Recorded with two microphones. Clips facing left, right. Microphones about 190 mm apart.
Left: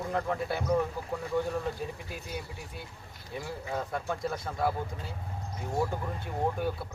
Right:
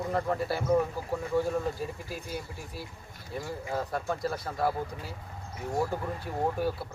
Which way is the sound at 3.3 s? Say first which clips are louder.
Right 2 dB; centre (ahead or behind).